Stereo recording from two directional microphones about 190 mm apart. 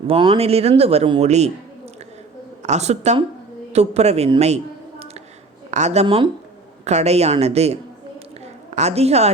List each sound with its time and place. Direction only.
0.1 s speech: 30° right (ahead or behind)
2.6 s a man's voice: 35° right (ahead or behind)